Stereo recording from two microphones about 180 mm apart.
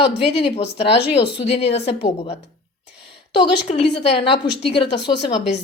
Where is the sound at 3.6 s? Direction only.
35° left (ahead or behind).